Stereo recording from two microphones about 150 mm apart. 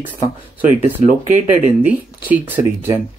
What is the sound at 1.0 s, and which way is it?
Speech, 60° right (ahead or behind).